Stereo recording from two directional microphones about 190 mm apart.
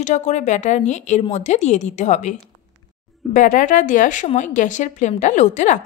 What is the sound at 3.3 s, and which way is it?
Speech, 45° left (ahead or behind).